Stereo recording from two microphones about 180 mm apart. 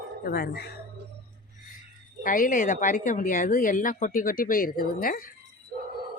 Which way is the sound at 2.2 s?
45° left (ahead or behind).